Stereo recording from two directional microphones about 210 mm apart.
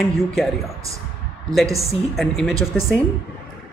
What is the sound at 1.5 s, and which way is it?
A man's voice, centre (ahead or behind).